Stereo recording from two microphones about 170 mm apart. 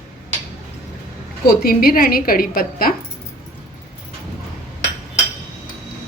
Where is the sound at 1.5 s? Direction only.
60° left (ahead or behind).